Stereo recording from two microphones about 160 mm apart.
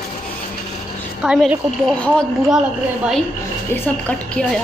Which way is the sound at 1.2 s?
5° right (ahead or behind).